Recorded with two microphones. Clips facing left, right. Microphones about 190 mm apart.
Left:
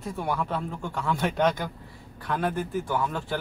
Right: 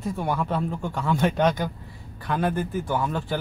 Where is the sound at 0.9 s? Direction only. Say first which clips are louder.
Right 3 dB; 5° right (ahead or behind).